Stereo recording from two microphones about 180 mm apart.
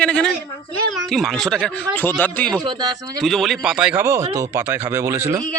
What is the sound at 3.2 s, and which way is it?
A child's voice, centre (ahead or behind).